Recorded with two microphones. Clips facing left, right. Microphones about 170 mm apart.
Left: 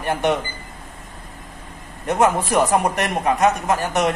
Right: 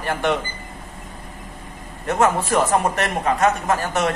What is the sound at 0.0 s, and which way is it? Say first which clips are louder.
Speech: left 1 dB; 20° left (ahead or behind).